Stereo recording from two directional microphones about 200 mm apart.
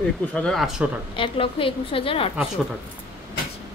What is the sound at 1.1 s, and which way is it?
A woman's voice, 25° left (ahead or behind).